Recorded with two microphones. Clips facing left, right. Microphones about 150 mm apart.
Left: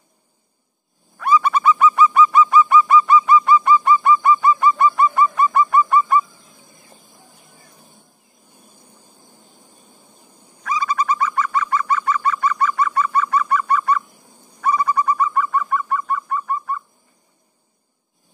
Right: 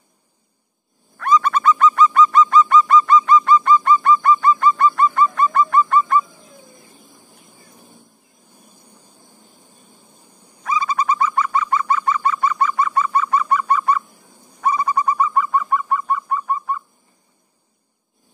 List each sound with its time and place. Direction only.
1.1 s bird: 10° left (ahead or behind)
10.6 s bird: 25° right (ahead or behind)